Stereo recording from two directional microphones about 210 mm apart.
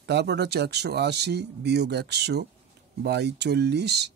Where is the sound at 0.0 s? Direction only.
55° right (ahead or behind).